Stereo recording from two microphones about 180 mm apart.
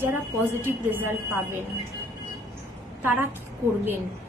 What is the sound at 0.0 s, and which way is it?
A woman's voice, 10° right (ahead or behind).